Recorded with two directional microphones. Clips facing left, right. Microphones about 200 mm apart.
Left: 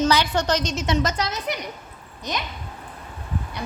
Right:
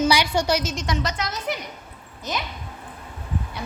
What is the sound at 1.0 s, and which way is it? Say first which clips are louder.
Speech: left 3 dB; 45° left (ahead or behind).